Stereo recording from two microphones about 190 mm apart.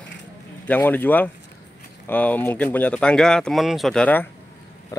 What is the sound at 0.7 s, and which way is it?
A man's voice, 10° left (ahead or behind).